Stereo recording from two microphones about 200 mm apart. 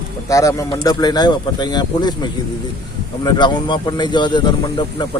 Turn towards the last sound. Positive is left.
turn(degrees=20)  # may be behind; listen again after turning